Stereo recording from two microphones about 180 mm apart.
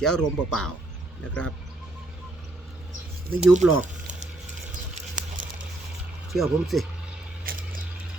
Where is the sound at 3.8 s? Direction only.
40° right (ahead or behind).